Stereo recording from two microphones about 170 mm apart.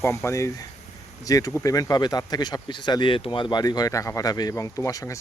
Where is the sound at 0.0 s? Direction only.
15° left (ahead or behind).